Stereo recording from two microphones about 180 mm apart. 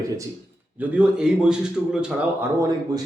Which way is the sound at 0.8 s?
10° right (ahead or behind).